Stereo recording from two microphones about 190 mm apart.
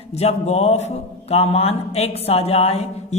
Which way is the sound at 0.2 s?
35° left (ahead or behind).